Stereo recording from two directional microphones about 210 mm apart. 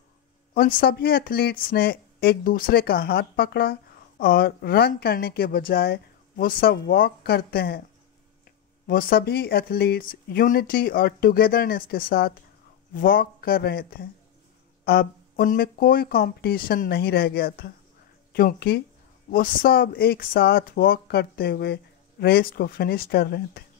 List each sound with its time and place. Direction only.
0.6 s speech: 45° left (ahead or behind)
8.8 s speech: 45° left (ahead or behind)